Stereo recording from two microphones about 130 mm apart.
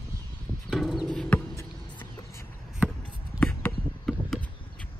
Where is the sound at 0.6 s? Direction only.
Centre (ahead or behind).